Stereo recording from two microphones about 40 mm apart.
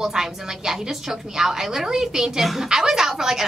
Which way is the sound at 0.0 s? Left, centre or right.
Centre.